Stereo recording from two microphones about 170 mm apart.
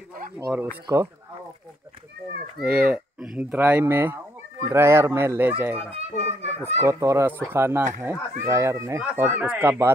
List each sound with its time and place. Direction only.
0.4 s speech: 10° right (ahead or behind)
2.6 s speech: 10° right (ahead or behind)
6.1 s a child's voice: 90° left
6.8 s speech: 15° right (ahead or behind)